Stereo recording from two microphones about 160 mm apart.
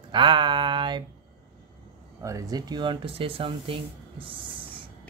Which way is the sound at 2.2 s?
20° right (ahead or behind).